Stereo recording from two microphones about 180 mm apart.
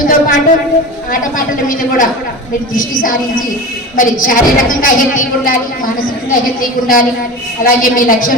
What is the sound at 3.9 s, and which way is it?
A woman's voice, 45° left (ahead or behind).